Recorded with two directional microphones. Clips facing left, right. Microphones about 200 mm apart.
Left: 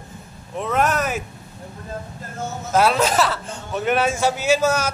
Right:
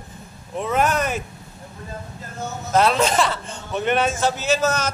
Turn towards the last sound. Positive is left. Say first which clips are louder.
# left 2 dB
turn(degrees=10)  # may be behind; listen again after turning